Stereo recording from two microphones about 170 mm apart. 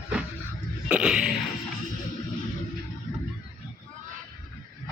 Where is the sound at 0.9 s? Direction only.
5° right (ahead or behind).